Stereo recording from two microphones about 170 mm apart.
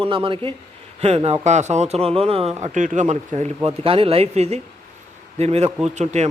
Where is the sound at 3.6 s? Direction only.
35° right (ahead or behind).